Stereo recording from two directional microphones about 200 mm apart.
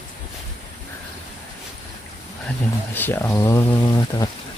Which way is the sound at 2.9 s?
10° left (ahead or behind).